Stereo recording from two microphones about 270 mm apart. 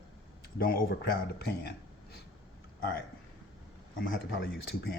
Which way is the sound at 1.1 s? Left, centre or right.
Left.